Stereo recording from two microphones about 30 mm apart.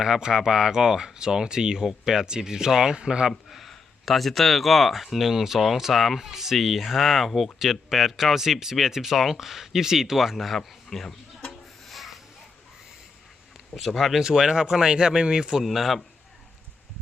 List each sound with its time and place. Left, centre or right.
0.0 s speech: right
3.5 s speech: centre
10.3 s speech: centre
11.9 s a sound: centre
13.8 s speech: centre
14.2 s speech: centre
15.6 s speech: centre